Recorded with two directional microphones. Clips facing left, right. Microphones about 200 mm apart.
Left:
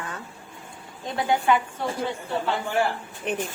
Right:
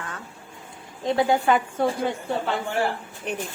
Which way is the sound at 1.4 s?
45° right (ahead or behind).